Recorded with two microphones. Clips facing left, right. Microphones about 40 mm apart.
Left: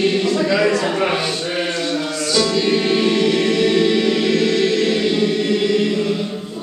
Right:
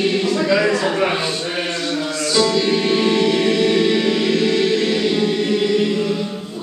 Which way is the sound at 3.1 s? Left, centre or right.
Centre.